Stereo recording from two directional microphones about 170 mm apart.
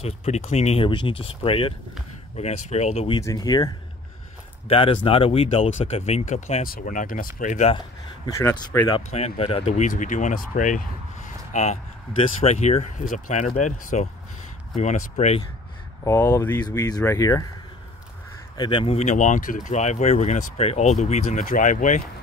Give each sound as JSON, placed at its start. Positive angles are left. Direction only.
{"t": 0.0, "sound": "speech", "side_deg": 40}
{"t": 3.2, "sound": "speech", "side_deg": 20}
{"t": 4.6, "sound": "speech", "side_deg": 35}
{"t": 8.3, "sound": "speech", "side_deg": 15}
{"t": 8.8, "sound": "speech", "side_deg": 35}
{"t": 16.0, "sound": "speech", "side_deg": 15}
{"t": 18.6, "sound": "speech", "side_deg": 30}